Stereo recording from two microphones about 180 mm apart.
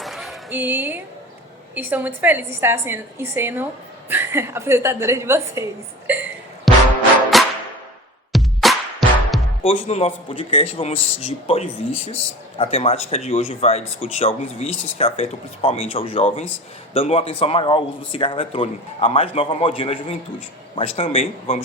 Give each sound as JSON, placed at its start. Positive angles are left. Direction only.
{"t": 0.0, "sound": "a sound", "side_deg": 0}
{"t": 0.5, "sound": "a woman's voice", "side_deg": -10}
{"t": 6.7, "sound": "music", "side_deg": 0}
{"t": 9.6, "sound": "speech", "side_deg": 35}